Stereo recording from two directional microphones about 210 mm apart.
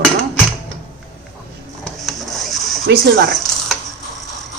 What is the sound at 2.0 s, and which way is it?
Rub, centre (ahead or behind).